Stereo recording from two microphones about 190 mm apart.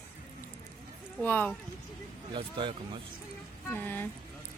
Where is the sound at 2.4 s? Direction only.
25° right (ahead or behind).